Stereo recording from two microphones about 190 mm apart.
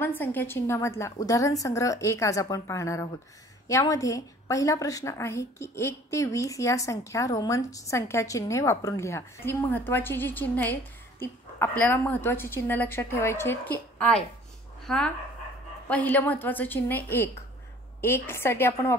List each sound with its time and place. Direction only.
0.0 s a woman's voice: 10° left (ahead or behind)